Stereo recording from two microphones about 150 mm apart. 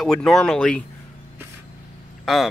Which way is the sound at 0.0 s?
Centre (ahead or behind).